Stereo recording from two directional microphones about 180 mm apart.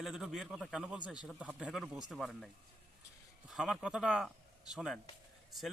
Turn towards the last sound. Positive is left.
turn(degrees=0)  # may be behind; listen again after turning